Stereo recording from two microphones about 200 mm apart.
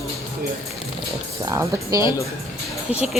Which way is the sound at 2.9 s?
30° left (ahead or behind).